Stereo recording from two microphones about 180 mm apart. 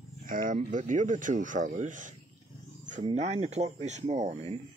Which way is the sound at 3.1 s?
40° right (ahead or behind).